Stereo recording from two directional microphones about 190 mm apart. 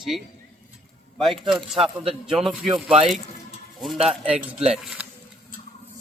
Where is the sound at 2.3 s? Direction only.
Centre (ahead or behind).